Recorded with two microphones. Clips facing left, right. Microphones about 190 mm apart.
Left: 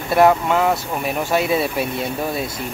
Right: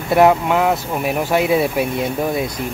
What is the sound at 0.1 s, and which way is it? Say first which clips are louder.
Speech: right 2 dB; 10° right (ahead or behind).